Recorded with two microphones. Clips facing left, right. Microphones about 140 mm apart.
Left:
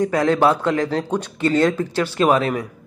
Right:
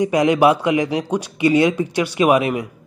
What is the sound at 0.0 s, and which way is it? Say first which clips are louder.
A man's voice: right 2 dB; 15° right (ahead or behind).